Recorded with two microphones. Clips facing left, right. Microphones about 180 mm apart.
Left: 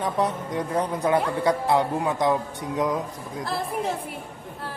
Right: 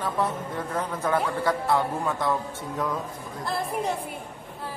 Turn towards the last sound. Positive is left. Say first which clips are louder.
# even
turn(degrees=0)  # may be behind; listen again after turning